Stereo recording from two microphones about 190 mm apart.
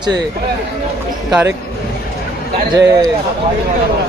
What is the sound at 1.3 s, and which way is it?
Speech, 10° right (ahead or behind).